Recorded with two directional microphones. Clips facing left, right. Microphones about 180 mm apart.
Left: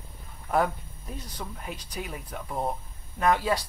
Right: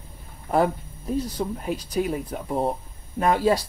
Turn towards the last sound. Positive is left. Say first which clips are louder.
# right 4 dB
turn(degrees=-35)  # may be behind; listen again after turning